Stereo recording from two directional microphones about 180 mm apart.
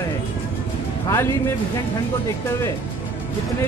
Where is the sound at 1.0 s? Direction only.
15° left (ahead or behind).